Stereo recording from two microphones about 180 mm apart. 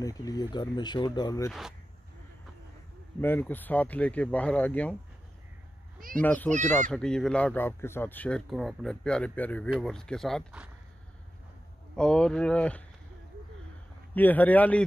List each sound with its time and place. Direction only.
0.0 s speech: 20° left (ahead or behind)
1.5 s speech: centre (ahead or behind)
3.2 s speech: 10° left (ahead or behind)
5.9 s a child's voice: 50° right (ahead or behind)
6.2 s speech: 10° left (ahead or behind)
11.9 s speech: 5° left (ahead or behind)
14.1 s speech: 10° left (ahead or behind)